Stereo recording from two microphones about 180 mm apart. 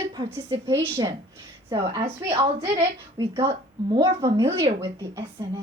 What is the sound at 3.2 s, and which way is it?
A woman's voice, 15° right (ahead or behind).